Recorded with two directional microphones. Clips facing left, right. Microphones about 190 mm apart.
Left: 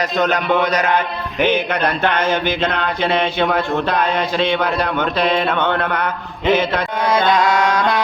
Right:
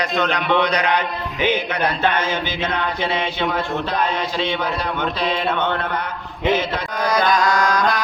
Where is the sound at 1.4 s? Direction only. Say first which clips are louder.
Left 3 dB; 60° left (ahead or behind).